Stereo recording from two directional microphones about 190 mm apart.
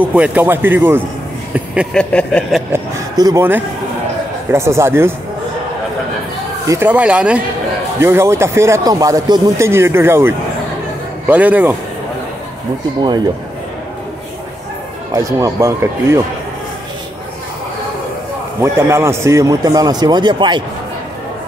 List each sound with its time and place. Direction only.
0.0 s speech: 10° right (ahead or behind)
2.0 s a sound: 5° left (ahead or behind)
2.7 s a sound: 15° right (ahead or behind)
4.5 s speech: 15° right (ahead or behind)
6.7 s speech: 10° right (ahead or behind)
15.1 s speech: 15° right (ahead or behind)
18.6 s a man's voice: 15° right (ahead or behind)